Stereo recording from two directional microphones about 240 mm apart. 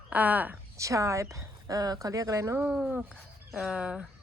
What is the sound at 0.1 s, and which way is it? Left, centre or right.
Speech, centre.